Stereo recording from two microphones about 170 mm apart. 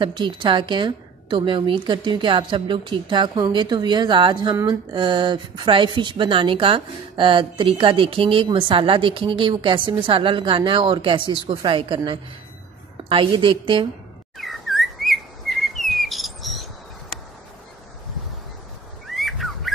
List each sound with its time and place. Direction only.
0.0 s a woman's voice: 25° right (ahead or behind)
14.4 s chirp: centre (ahead or behind)
19.0 s bird: centre (ahead or behind)